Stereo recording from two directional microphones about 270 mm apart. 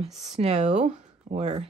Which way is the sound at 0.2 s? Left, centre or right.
Right.